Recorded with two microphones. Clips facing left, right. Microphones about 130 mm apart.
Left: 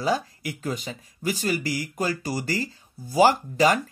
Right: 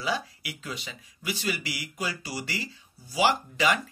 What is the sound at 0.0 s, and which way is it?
Speech, 45° left (ahead or behind).